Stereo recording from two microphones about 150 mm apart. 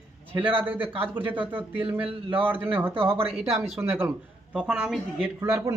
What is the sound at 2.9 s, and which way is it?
Speech, 35° right (ahead or behind).